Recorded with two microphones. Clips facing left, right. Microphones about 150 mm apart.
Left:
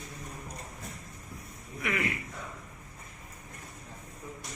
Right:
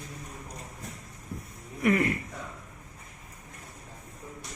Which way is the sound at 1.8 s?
40° right (ahead or behind).